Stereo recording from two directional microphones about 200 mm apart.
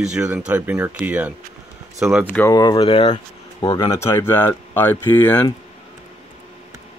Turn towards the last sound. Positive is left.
turn(degrees=10)  # may be behind; listen again after turning